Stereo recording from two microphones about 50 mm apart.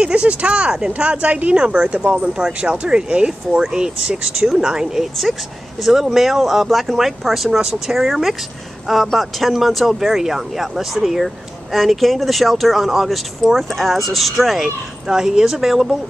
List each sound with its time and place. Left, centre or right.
0.0 s speech: right
5.9 s speech: centre
15.0 s speech: centre